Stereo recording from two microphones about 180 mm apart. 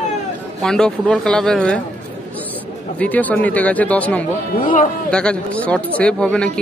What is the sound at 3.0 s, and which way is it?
Speech, 10° left (ahead or behind).